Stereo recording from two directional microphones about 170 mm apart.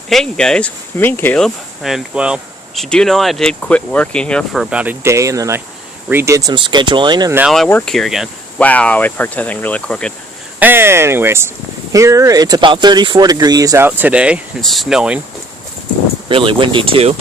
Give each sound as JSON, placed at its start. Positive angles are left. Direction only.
{"t": 0.1, "sound": "speech", "side_deg": 5}
{"t": 7.3, "sound": "speech", "side_deg": 0}
{"t": 10.6, "sound": "speech", "side_deg": -15}
{"t": 16.3, "sound": "speech", "side_deg": -30}